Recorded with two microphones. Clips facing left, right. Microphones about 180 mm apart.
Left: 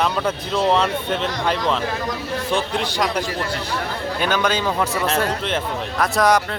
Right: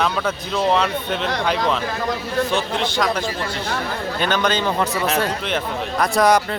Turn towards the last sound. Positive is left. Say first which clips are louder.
# right 1 dB
turn(degrees=0)  # may be behind; listen again after turning